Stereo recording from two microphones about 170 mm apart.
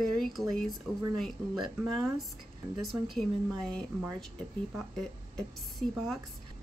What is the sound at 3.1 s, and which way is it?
Speech, 5° left (ahead or behind).